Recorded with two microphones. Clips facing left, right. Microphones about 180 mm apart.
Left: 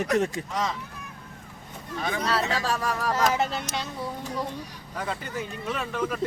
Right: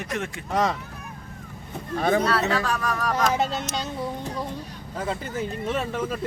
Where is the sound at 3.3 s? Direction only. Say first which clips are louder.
Right 2 dB; 25° right (ahead or behind).